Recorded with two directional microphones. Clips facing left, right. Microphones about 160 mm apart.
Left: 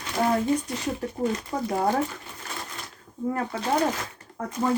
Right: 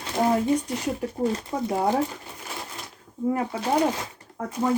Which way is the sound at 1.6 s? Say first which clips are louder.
Right 1 dB; 15° right (ahead or behind).